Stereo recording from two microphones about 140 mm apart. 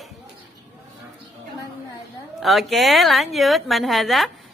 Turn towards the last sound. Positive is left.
turn(degrees=0)  # may be behind; listen again after turning